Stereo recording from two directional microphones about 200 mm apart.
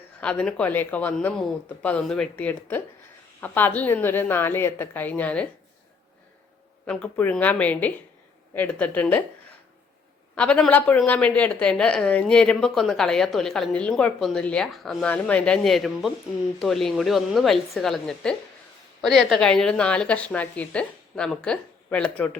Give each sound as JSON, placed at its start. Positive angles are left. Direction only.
{"t": 0.2, "sound": "speech", "side_deg": 5}
{"t": 6.8, "sound": "speech", "side_deg": 5}
{"t": 10.3, "sound": "a woman's voice", "side_deg": 5}